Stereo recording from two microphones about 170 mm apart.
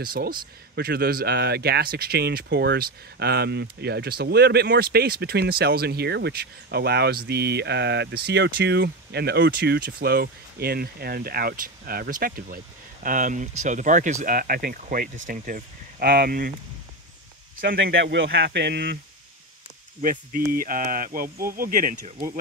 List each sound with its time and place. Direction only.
0.0 s speech: 60° right (ahead or behind)
17.6 s speech: 60° right (ahead or behind); by 18.9 s 80° right
20.0 s speech: 55° right (ahead or behind)